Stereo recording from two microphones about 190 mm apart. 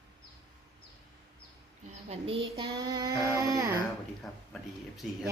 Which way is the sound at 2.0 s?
30° right (ahead or behind).